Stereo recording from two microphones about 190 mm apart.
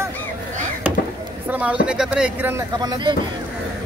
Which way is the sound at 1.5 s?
5° right (ahead or behind).